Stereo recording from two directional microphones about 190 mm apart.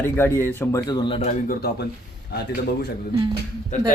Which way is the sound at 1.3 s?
50° left (ahead or behind).